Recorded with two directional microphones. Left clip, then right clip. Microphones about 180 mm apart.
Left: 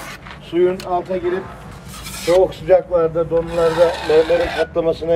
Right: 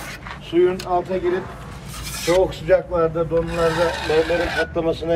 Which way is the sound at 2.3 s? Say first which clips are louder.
Left 4 dB; 50° left (ahead or behind).